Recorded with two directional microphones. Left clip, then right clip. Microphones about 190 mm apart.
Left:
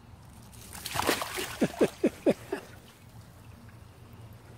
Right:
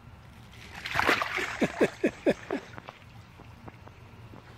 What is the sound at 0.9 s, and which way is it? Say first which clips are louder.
Splash: right 4 dB; centre (ahead or behind).